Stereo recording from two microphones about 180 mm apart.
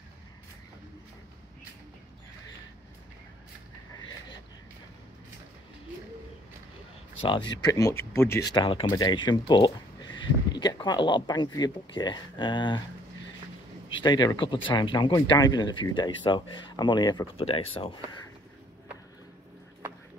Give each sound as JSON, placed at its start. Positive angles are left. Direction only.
{"t": 7.2, "sound": "speech", "side_deg": 25}
{"t": 8.5, "sound": "speech", "side_deg": 25}
{"t": 13.8, "sound": "speech", "side_deg": 25}